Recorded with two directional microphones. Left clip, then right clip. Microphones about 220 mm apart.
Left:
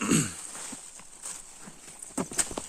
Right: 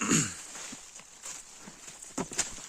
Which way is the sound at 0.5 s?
50° left (ahead or behind).